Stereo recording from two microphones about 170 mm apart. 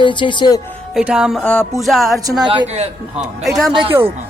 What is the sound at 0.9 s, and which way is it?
Music, 5° right (ahead or behind).